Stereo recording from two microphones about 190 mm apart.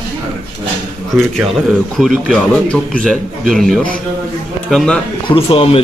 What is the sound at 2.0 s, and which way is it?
A man's voice, centre (ahead or behind).